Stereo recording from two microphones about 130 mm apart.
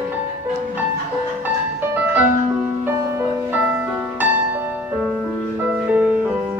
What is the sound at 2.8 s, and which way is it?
Music, 15° right (ahead or behind).